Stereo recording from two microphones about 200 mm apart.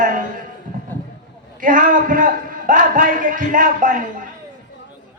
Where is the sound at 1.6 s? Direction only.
40° right (ahead or behind).